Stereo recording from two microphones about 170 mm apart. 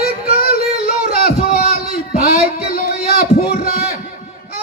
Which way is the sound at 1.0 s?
65° left (ahead or behind).